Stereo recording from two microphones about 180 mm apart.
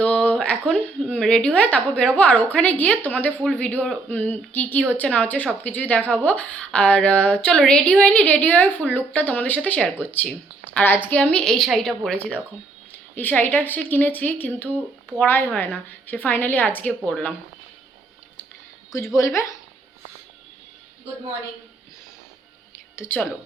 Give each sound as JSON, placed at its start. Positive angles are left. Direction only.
{"t": 0.0, "sound": "a sound", "side_deg": 5}
{"t": 1.1, "sound": "a woman's voice", "side_deg": 5}
{"t": 18.9, "sound": "a woman's voice", "side_deg": 15}
{"t": 23.0, "sound": "a woman's voice", "side_deg": 10}